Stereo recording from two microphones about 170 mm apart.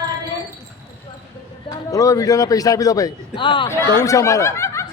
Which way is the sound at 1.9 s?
20° left (ahead or behind).